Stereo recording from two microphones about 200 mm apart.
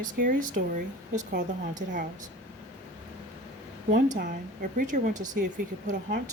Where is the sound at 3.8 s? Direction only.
40° right (ahead or behind).